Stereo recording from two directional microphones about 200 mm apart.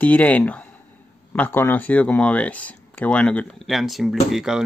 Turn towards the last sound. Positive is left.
turn(degrees=0)  # may be behind; listen again after turning